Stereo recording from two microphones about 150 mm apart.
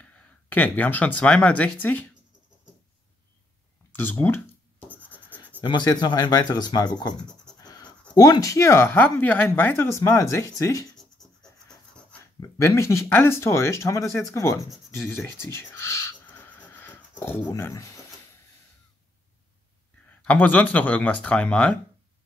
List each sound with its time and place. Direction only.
0.0 s speech: 10° left (ahead or behind)
3.9 s a sound: 15° left (ahead or behind)
4.8 s scratch: 10° right (ahead or behind)
5.6 s speech: 30° left (ahead or behind)
7.6 s writing: 25° left (ahead or behind)
8.1 s speech: 25° left (ahead or behind)
11.2 s a sound: centre (ahead or behind)
12.4 s speech: 20° left (ahead or behind)
15.0 s owl: 15° left (ahead or behind)
17.2 s speech: 15° left (ahead or behind)
20.1 s speech: 10° left (ahead or behind)